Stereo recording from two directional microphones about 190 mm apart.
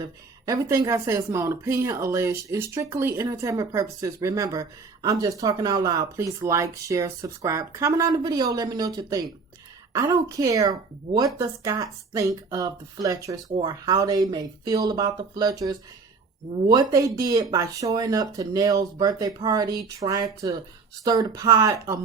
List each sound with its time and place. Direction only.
0.0 s speech: 20° right (ahead or behind)